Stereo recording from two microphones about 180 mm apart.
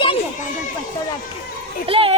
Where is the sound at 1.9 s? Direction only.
30° right (ahead or behind).